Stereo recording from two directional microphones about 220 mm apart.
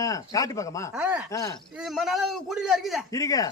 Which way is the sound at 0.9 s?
5° right (ahead or behind).